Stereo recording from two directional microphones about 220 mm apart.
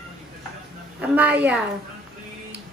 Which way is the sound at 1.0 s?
5° right (ahead or behind).